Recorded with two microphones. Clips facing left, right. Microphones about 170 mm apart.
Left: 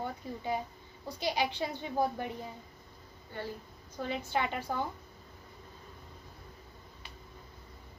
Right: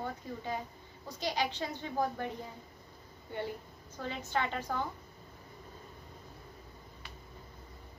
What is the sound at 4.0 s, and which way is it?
Speech, 15° left (ahead or behind).